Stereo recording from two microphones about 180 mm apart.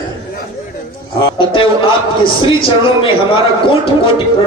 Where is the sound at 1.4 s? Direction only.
30° left (ahead or behind).